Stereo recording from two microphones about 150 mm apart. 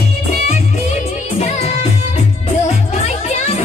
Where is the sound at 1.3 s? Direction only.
45° left (ahead or behind).